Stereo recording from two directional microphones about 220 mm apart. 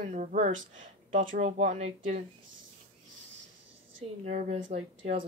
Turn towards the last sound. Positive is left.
turn(degrees=-25)  # may be behind; listen again after turning